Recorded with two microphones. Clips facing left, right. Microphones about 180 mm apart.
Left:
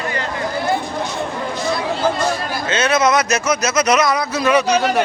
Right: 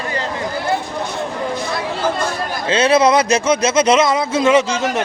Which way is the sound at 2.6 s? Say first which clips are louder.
Right 4 dB; 30° right (ahead or behind).